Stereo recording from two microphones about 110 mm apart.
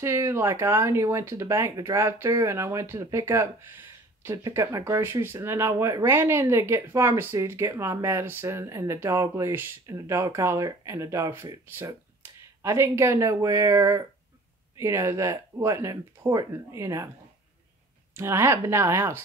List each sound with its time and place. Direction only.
0.0 s speech: 25° right (ahead or behind)
18.1 s speech: 25° right (ahead or behind)